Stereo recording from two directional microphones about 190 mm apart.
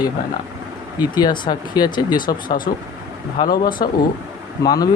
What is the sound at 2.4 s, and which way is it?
Speech, 45° left (ahead or behind).